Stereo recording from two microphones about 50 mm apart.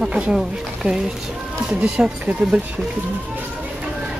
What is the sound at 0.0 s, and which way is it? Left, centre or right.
A woman's voice, centre.